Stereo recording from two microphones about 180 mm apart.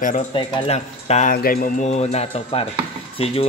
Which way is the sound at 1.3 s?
55° left (ahead or behind).